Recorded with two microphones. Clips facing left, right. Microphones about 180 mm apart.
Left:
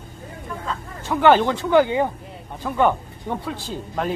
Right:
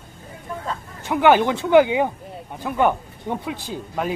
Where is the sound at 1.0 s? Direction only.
15° right (ahead or behind).